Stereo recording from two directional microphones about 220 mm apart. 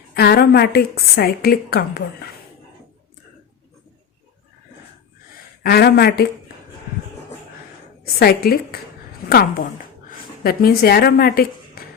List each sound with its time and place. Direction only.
0.1 s a woman's voice: 45° left (ahead or behind)
5.6 s a woman's voice: 45° left (ahead or behind)
8.2 s a woman's voice: 45° left (ahead or behind)